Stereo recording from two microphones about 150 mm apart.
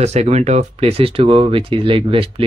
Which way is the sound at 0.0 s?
45° right (ahead or behind).